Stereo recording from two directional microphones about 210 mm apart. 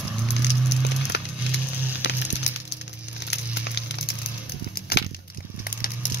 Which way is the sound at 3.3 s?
55° left (ahead or behind).